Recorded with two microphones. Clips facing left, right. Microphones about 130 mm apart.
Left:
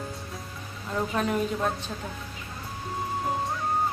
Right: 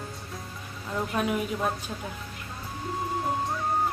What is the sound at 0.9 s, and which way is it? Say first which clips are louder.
Speech: left 1 dB; 5° right (ahead or behind).